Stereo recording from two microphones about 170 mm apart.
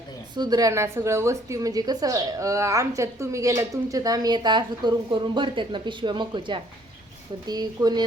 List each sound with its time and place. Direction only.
0.3 s a woman's voice: 25° right (ahead or behind)